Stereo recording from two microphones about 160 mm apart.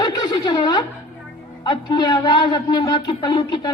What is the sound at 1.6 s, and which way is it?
A man's voice, 25° left (ahead or behind).